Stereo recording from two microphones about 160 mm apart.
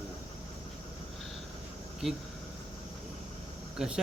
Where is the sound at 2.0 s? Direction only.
5° right (ahead or behind).